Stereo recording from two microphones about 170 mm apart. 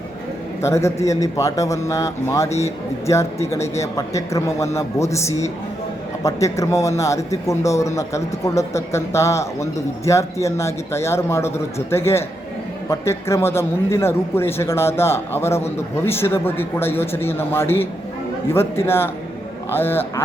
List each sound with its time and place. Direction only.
0.6 s a man's voice: 15° left (ahead or behind)